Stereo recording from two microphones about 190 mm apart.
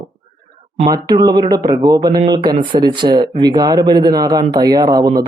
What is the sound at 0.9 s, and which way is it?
Speech, 20° right (ahead or behind).